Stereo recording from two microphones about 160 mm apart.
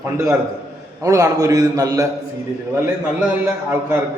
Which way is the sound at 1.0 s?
20° right (ahead or behind).